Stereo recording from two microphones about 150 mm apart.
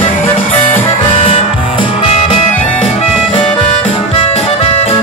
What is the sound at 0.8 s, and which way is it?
Music, 40° left (ahead or behind).